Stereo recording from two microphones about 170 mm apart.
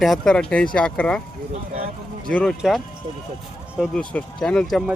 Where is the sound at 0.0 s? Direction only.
Centre (ahead or behind).